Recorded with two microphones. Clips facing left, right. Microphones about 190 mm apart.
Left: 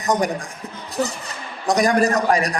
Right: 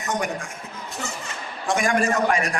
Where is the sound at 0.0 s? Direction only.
35° left (ahead or behind).